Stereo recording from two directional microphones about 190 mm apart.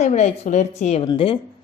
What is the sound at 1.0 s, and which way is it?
Speech, 25° left (ahead or behind).